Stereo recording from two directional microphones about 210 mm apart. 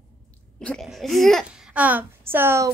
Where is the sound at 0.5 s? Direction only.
Centre (ahead or behind).